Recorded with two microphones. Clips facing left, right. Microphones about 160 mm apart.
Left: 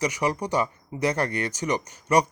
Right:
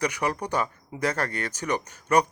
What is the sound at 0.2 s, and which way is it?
Speech, 10° left (ahead or behind).